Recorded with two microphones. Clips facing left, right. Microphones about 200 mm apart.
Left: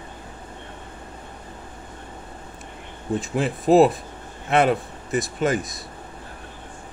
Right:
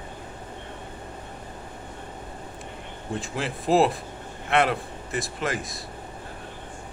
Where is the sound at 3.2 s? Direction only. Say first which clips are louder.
Left 6 dB; 20° left (ahead or behind).